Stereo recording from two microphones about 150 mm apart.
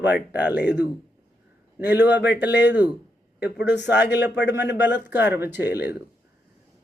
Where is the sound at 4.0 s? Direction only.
90° left.